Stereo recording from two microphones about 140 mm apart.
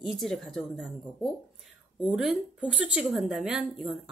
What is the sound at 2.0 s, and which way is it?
Speech, 5° right (ahead or behind).